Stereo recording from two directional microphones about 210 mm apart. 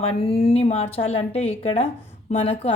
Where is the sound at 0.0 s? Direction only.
30° left (ahead or behind).